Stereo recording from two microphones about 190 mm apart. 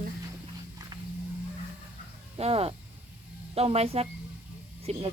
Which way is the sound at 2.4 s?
30° right (ahead or behind).